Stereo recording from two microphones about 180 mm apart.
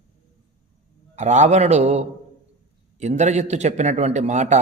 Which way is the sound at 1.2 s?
40° right (ahead or behind).